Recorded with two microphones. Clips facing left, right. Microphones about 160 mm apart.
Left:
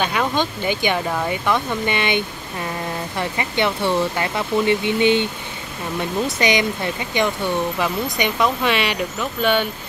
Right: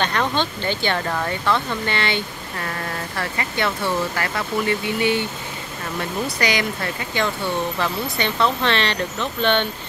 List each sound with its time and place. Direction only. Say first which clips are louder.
0.0 s speech: left 1 dB; 10° left (ahead or behind)